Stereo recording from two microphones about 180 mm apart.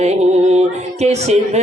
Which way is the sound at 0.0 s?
35° right (ahead or behind).